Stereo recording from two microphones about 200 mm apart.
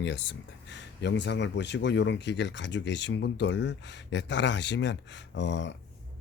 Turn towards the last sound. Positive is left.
turn(degrees=60)  # may be behind; listen again after turning